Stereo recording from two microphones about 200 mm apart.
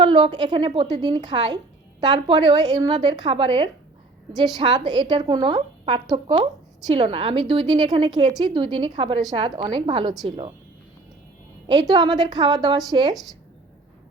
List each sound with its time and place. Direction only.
0.0 s a woman's voice: 20° right (ahead or behind)
11.6 s a woman's voice: 20° right (ahead or behind)